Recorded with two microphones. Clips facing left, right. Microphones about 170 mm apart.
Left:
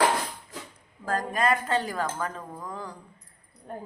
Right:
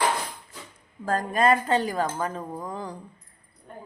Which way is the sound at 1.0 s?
30° right (ahead or behind).